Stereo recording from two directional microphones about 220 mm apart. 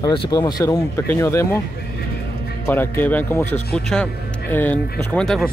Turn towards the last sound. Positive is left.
turn(degrees=5)  # may be behind; listen again after turning